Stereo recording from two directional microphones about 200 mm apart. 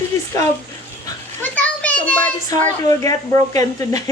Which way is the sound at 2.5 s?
15° left (ahead or behind).